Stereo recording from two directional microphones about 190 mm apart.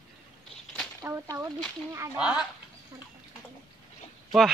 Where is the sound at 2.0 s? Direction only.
5° right (ahead or behind).